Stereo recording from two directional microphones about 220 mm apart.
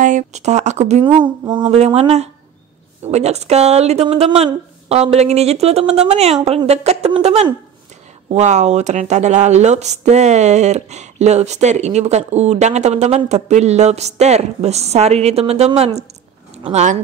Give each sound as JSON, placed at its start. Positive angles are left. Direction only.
{"t": 0.0, "sound": "speech", "side_deg": -35}